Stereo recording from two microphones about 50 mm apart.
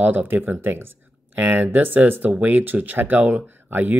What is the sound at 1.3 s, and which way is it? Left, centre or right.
Speech, right.